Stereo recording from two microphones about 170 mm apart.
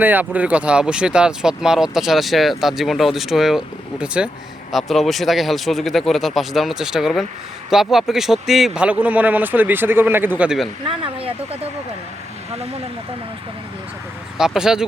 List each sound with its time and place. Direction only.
0.0 s speech: 10° right (ahead or behind)
10.8 s speech: 30° right (ahead or behind)
14.3 s speech: 5° right (ahead or behind)